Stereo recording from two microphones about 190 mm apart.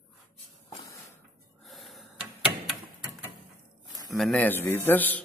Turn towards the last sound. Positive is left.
turn(degrees=10)  # may be behind; listen again after turning